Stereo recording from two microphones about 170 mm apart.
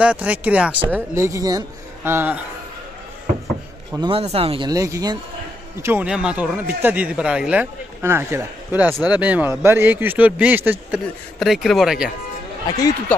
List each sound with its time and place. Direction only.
0.0 s speech: 10° right (ahead or behind)
4.0 s speech: 35° right (ahead or behind)
4.6 s speech: 20° right (ahead or behind)
11.3 s speech: centre (ahead or behind)